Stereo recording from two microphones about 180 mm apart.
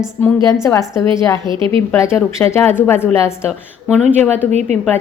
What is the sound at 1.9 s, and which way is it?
Speech, 15° left (ahead or behind).